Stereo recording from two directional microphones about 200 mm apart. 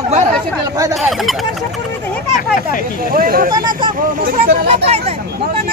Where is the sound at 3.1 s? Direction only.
45° right (ahead or behind).